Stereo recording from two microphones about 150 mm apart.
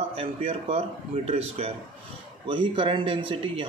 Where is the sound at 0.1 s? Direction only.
40° right (ahead or behind).